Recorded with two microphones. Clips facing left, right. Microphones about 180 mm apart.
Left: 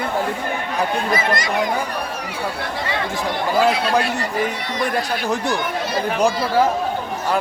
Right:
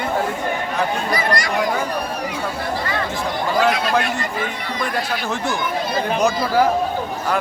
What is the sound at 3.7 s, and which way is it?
Speech, 30° left (ahead or behind).